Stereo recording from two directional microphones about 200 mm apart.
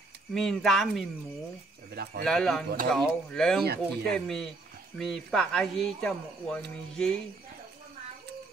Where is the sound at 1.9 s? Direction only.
50° right (ahead or behind).